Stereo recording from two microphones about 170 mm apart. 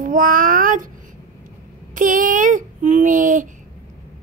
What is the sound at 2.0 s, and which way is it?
A child's voice, 50° right (ahead or behind).